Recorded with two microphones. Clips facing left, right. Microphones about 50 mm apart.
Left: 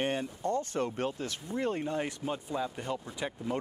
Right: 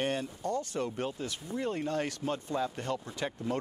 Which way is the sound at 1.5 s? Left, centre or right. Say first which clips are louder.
Left 1 dB; left.